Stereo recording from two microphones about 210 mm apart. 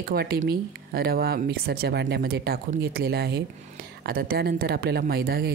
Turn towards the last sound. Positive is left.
turn(degrees=-45)  # may be behind; listen again after turning